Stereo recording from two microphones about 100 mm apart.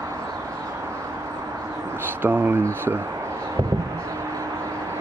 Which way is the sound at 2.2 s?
20° right (ahead or behind).